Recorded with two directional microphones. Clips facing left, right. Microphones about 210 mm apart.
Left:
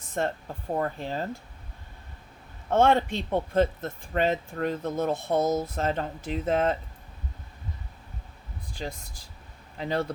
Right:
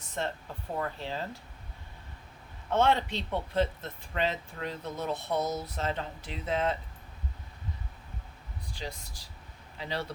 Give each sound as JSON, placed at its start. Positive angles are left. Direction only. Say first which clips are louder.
{"t": 0.2, "sound": "speech", "louder": "left 6 dB", "side_deg": 50}
{"t": 2.6, "sound": "speech", "louder": "left 5 dB", "side_deg": 50}
{"t": 8.7, "sound": "speech", "louder": "left 5 dB", "side_deg": 50}